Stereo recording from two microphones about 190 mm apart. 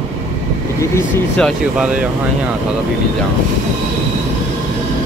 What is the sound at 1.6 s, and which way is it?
Speech, 5° right (ahead or behind).